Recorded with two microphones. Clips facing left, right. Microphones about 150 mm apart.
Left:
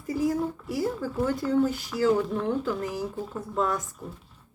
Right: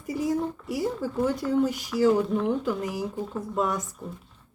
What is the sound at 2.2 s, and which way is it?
Speech, centre (ahead or behind).